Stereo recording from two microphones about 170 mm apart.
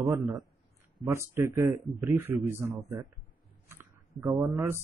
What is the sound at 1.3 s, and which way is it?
Speech, 15° right (ahead or behind).